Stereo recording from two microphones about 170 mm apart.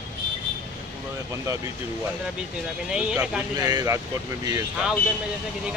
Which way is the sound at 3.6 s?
20° right (ahead or behind).